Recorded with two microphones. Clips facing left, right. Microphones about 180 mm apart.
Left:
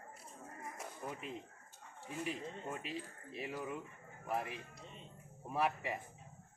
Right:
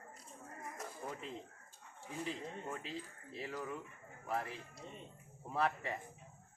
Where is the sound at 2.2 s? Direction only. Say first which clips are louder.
Left 1 dB; 10° left (ahead or behind).